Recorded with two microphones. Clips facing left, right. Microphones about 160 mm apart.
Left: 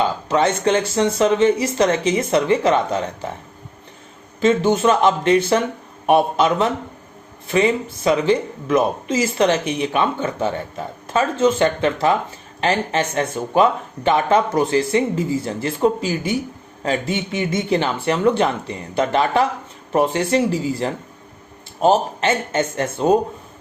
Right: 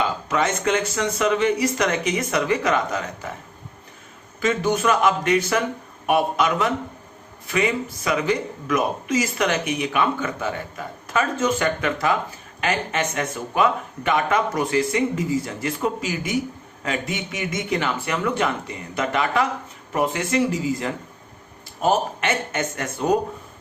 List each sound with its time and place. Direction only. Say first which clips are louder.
0.0 s speech: left 5 dB; 30° left (ahead or behind)
4.4 s speech: left 5 dB; 25° left (ahead or behind)